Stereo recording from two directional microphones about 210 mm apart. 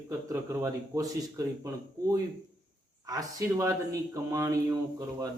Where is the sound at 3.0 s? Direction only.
15° right (ahead or behind).